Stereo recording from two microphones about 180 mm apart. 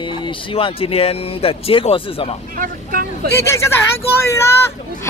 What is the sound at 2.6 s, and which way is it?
Vehicle, 55° right (ahead or behind).